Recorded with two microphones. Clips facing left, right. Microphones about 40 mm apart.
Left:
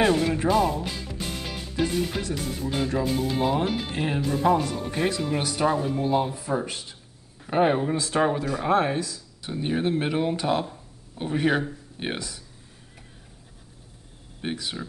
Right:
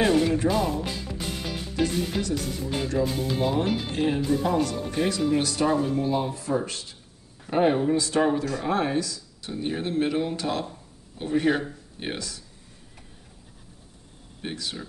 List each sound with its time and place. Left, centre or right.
0.0 s speech: centre
0.4 s speech: centre
1.8 s speech: left
14.4 s speech: centre